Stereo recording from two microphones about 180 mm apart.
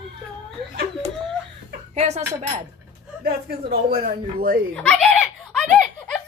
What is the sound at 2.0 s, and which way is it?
Speech, 40° right (ahead or behind).